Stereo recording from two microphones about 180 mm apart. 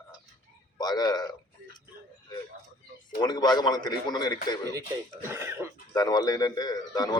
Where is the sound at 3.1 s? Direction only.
25° left (ahead or behind).